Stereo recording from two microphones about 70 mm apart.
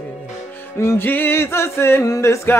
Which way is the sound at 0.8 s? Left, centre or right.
Left.